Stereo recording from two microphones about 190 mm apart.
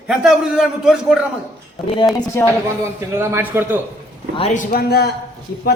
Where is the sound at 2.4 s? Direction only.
15° left (ahead or behind).